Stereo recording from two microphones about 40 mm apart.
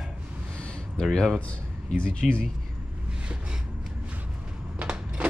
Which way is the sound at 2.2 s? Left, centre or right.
Centre.